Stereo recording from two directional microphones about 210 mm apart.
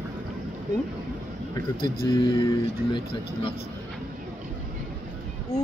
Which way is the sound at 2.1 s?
15° left (ahead or behind).